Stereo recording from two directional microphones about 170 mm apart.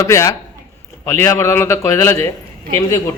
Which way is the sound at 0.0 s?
20° left (ahead or behind).